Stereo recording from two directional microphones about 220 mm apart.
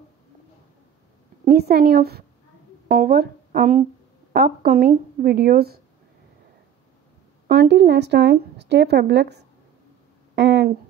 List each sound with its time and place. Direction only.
1.4 s speech: 45° right (ahead or behind)
7.4 s speech: 45° right (ahead or behind)
10.3 s a sound: 50° right (ahead or behind)